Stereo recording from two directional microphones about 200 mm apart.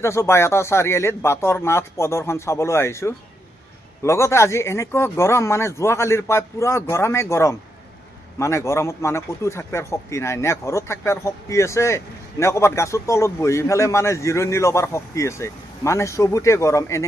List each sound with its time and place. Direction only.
0.0 s a man's voice: 15° left (ahead or behind)